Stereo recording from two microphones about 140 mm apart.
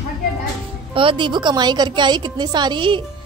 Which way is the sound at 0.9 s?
35° right (ahead or behind).